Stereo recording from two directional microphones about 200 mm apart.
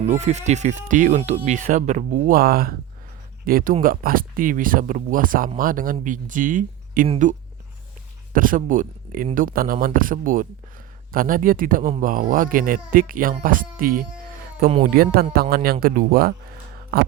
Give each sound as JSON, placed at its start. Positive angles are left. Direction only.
{"t": 0.0, "sound": "speech", "side_deg": -35}